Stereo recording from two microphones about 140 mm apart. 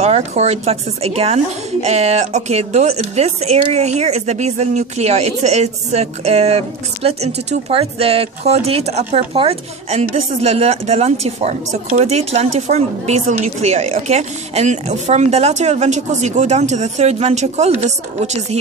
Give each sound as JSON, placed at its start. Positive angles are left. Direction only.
{"t": 0.0, "sound": "speech", "side_deg": -50}